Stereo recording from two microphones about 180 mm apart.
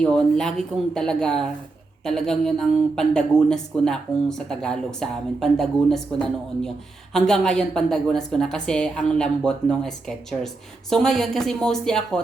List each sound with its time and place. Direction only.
0.0 s a woman's voice: 5° left (ahead or behind)